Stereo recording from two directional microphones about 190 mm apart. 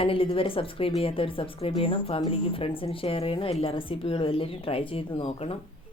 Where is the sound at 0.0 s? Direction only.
30° left (ahead or behind).